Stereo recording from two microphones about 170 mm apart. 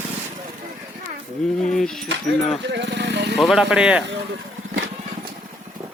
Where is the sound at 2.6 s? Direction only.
90° right.